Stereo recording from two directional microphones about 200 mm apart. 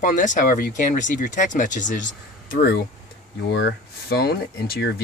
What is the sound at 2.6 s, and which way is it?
Speech, 55° left (ahead or behind).